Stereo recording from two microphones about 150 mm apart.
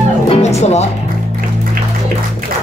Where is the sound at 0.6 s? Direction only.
45° left (ahead or behind).